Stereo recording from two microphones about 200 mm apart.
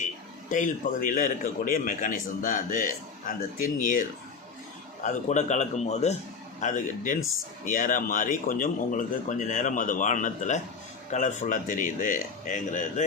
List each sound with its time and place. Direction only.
0.5 s a man's voice: 40° left (ahead or behind)
5.0 s a man's voice: 35° left (ahead or behind)